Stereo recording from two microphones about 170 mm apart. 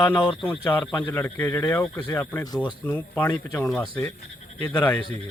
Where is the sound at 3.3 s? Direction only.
20° left (ahead or behind).